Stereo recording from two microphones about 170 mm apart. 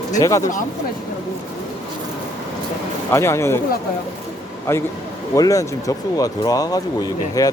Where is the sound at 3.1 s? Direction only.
15° left (ahead or behind).